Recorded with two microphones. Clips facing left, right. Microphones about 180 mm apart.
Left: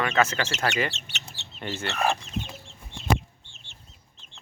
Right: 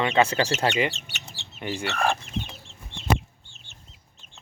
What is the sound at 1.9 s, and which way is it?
Speech, centre (ahead or behind).